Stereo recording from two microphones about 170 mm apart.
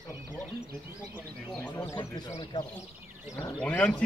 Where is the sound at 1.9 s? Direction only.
20° left (ahead or behind).